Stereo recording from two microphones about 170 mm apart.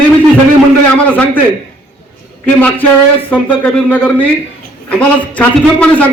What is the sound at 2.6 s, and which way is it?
A man's voice, 10° left (ahead or behind).